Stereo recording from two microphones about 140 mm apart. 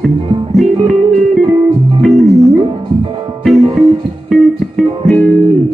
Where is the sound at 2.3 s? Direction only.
Centre (ahead or behind).